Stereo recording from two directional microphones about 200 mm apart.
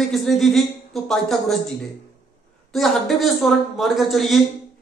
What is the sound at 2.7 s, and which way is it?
Speech, centre (ahead or behind).